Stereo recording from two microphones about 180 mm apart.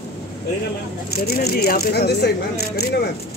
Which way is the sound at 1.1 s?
60° left (ahead or behind).